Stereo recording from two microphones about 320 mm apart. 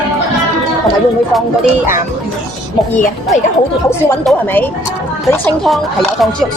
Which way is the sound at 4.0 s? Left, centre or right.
Centre.